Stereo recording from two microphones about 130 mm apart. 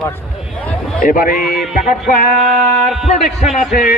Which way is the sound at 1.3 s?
Centre (ahead or behind).